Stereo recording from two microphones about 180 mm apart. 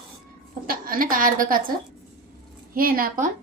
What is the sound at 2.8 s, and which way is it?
Speech, 55° right (ahead or behind).